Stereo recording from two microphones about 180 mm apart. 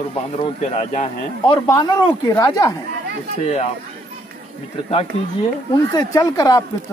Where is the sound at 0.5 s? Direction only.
40° left (ahead or behind).